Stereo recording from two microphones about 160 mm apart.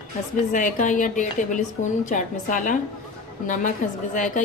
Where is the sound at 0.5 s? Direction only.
55° left (ahead or behind).